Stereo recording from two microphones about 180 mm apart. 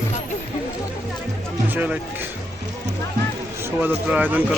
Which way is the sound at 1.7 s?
10° right (ahead or behind).